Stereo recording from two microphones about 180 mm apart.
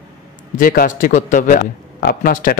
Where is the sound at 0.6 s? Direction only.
50° left (ahead or behind).